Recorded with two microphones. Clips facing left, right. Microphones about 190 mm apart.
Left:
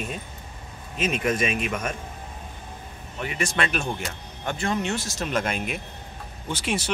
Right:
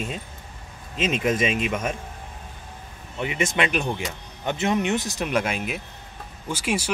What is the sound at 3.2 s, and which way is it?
Speech, 20° right (ahead or behind).